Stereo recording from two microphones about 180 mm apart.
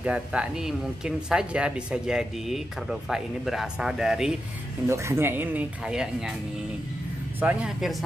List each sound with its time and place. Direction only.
0.0 s speech: 5° right (ahead or behind)
4.8 s speech: 15° right (ahead or behind)
7.3 s speech: 5° right (ahead or behind)